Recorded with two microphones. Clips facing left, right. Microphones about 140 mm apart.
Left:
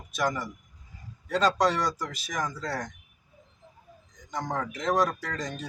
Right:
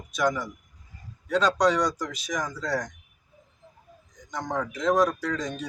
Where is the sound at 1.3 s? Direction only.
Centre (ahead or behind).